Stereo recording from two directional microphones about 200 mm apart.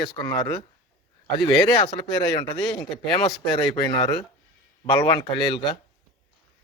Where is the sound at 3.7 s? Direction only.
20° left (ahead or behind).